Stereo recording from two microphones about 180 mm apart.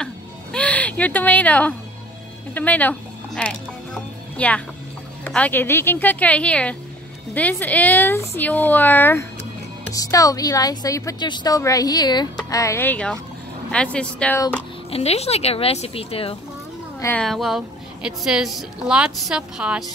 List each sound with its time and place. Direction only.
0.0 s a sound: 5° left (ahead or behind)
2.5 s music: 10° left (ahead or behind)
5.2 s speech: 10° left (ahead or behind)
14.9 s speech: 35° left (ahead or behind)
17.0 s a woman's voice: 5° left (ahead or behind)